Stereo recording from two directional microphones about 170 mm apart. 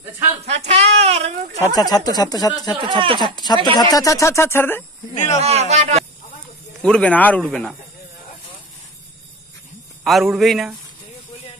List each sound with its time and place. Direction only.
0.5 s a sound: 40° right (ahead or behind)
1.8 s speech: 20° left (ahead or behind)
2.8 s speech: 30° right (ahead or behind)
3.3 s speech: 25° left (ahead or behind)
5.1 s speech: 45° left (ahead or behind)
5.4 s a man's voice: 40° right (ahead or behind)
6.8 s speech: 5° left (ahead or behind)
10.0 s a man's voice: centre (ahead or behind)